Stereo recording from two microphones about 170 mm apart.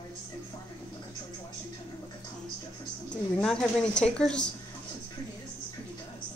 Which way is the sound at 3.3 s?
5° left (ahead or behind).